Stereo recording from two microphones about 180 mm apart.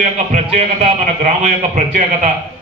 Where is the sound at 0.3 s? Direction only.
35° right (ahead or behind).